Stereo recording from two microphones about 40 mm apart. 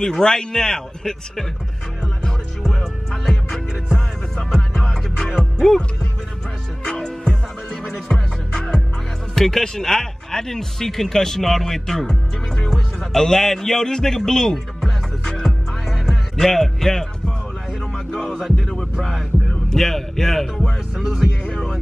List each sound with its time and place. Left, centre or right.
0.0 s a man's voice: centre
2.7 s music: centre
3.4 s music: centre
4.5 s music: centre
4.8 s music: centre
6.8 s music: centre
9.3 s speech: centre
18.3 s music: centre
18.7 s music: centre
19.7 s a man's voice: centre
20.9 s music: centre